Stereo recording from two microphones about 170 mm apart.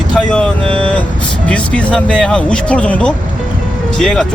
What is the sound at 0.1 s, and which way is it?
Vehicle, 5° left (ahead or behind).